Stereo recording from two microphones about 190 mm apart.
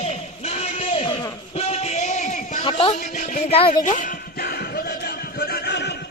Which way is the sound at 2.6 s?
30° left (ahead or behind).